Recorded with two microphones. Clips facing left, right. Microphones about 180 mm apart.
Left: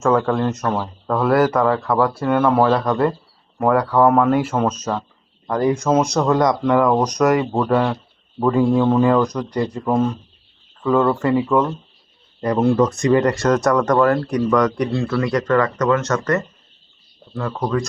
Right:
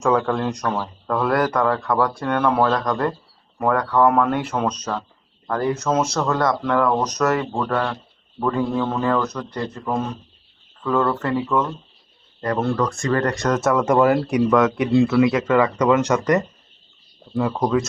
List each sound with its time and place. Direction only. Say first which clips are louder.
0.3 s speech: left 3 dB; 5° left (ahead or behind)
13.3 s speech: left 3 dB; centre (ahead or behind)